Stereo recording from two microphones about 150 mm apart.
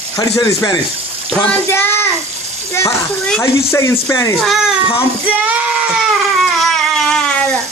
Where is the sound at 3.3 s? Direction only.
20° left (ahead or behind).